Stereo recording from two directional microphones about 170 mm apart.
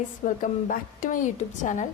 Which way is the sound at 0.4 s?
50° left (ahead or behind).